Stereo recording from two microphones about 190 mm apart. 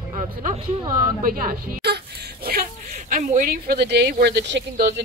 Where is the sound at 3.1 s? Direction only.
45° right (ahead or behind); by 4.9 s 60° right (ahead or behind).